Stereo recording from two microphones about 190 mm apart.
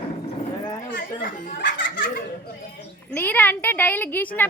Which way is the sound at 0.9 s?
45° left (ahead or behind).